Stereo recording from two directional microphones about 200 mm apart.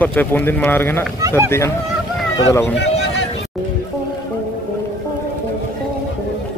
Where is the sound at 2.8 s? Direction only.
60° left (ahead or behind).